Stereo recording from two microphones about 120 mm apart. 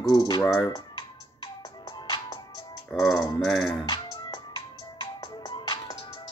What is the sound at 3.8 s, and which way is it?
Music, 30° left (ahead or behind).